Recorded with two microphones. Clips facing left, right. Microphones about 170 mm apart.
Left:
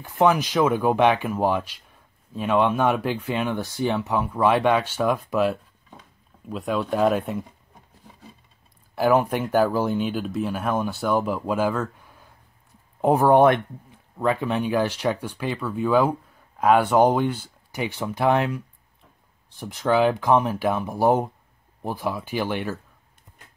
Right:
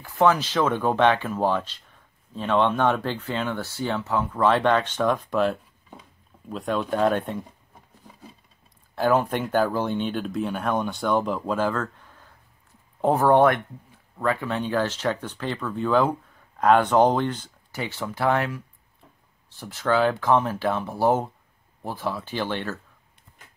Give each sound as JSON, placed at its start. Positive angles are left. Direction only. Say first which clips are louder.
{"t": 0.0, "sound": "speech", "louder": "left 1 dB", "side_deg": 15}
{"t": 8.9, "sound": "speech", "louder": "left 2 dB", "side_deg": 10}